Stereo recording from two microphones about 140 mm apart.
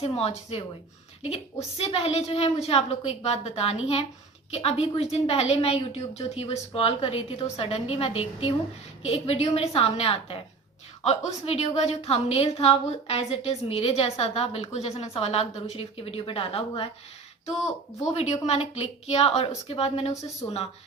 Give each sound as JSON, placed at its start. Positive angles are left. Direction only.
{"t": 0.0, "sound": "a woman's voice", "side_deg": 45}
{"t": 18.1, "sound": "a woman's voice", "side_deg": 45}